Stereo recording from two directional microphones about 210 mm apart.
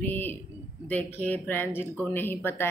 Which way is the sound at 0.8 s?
10° left (ahead or behind).